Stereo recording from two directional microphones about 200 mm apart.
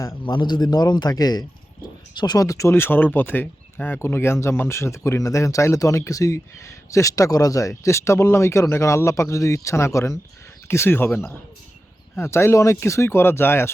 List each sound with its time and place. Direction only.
0.0 s speech: 20° left (ahead or behind)